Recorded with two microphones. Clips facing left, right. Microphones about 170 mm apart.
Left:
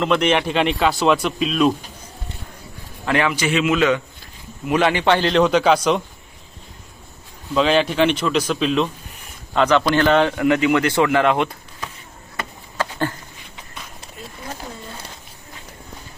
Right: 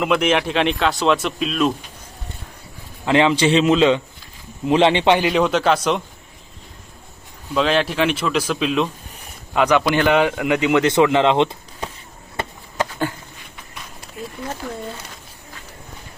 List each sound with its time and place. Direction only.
0.0 s speech: 5° right (ahead or behind)
3.1 s a man's voice: 20° right (ahead or behind)
5.4 s speech: centre (ahead or behind)
7.5 s a man's voice: centre (ahead or behind); by 11.9 s 25° right (ahead or behind)
12.7 s a sound: 15° right (ahead or behind)